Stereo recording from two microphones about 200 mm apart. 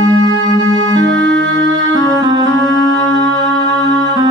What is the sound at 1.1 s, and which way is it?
Music, 65° right (ahead or behind).